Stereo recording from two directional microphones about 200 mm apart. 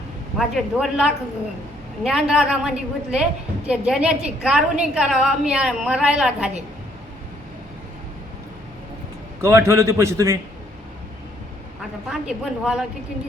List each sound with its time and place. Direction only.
0.3 s a woman's voice: centre (ahead or behind)
9.4 s a man's voice: 15° right (ahead or behind)
12.2 s a woman's voice: 5° right (ahead or behind)